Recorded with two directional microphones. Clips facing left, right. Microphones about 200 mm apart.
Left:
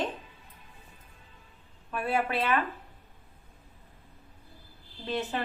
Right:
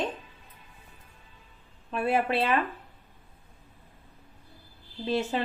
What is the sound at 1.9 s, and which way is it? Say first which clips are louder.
Speech: right 3 dB; 30° right (ahead or behind).